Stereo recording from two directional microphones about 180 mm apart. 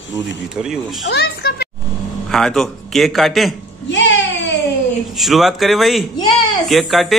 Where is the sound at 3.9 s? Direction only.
80° left.